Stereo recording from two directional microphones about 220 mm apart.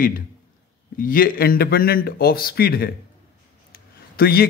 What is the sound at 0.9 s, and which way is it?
A man's voice, 40° left (ahead or behind).